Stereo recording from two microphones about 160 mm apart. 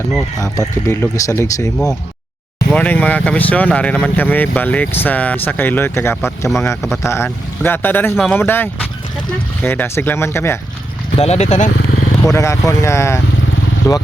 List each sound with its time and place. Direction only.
0.3 s speech: 20° left (ahead or behind)
6.8 s speech: centre (ahead or behind)
7.1 s speech: 15° left (ahead or behind)
11.2 s speech: 45° left (ahead or behind)
12.3 s speech: 20° left (ahead or behind)